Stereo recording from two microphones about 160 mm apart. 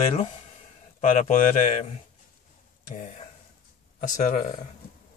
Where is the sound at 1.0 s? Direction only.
50° left (ahead or behind).